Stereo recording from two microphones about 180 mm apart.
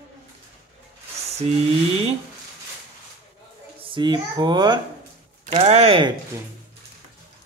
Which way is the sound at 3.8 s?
25° right (ahead or behind).